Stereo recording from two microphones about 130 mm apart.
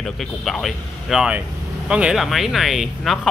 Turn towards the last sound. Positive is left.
turn(degrees=0)  # may be behind; listen again after turning